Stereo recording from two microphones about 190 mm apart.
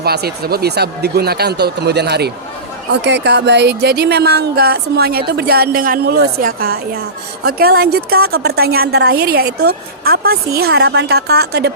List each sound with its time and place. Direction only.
0.0 s speech: 55° right (ahead or behind)